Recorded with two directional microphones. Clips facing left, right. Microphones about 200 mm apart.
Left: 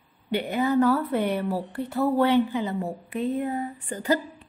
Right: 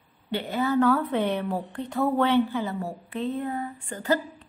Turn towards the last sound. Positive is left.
turn(degrees=15)  # may be behind; listen again after turning